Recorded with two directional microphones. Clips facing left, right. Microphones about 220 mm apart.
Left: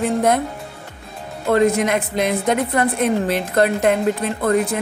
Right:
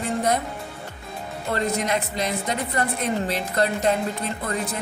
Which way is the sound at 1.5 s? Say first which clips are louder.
Left 9 dB; 55° left (ahead or behind).